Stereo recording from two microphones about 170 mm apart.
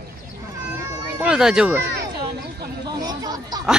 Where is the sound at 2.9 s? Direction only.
25° right (ahead or behind).